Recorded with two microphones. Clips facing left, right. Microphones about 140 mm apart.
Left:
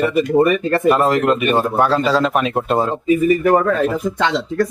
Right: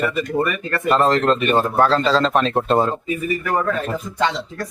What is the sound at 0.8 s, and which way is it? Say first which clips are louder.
Speech: even; 10° left (ahead or behind).